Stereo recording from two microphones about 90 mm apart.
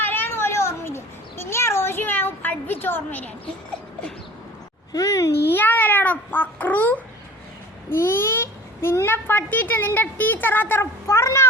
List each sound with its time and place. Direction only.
0.0 s a sound: 20° left (ahead or behind)
4.9 s a child's voice: 40° left (ahead or behind)
5.5 s a child's voice: 20° left (ahead or behind)